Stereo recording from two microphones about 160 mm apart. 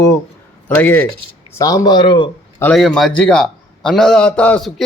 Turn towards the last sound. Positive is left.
turn(degrees=10)  # may be behind; listen again after turning